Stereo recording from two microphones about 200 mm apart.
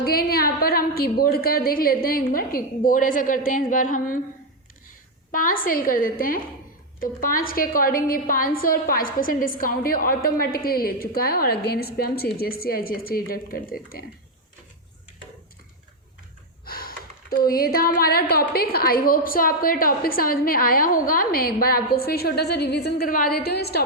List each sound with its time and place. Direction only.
0.0 s speech: 50° left (ahead or behind)
5.3 s speech: 45° left (ahead or behind)
16.6 s speech: 50° left (ahead or behind)